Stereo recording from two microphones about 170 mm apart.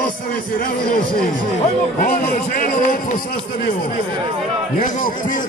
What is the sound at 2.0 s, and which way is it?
Speech, 50° left (ahead or behind).